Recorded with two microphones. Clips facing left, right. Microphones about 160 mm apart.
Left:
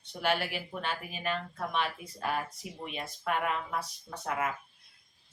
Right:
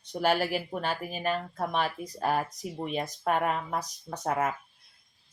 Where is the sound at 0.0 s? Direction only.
40° right (ahead or behind).